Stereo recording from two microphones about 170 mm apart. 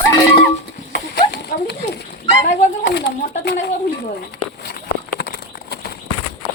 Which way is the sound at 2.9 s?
85° left.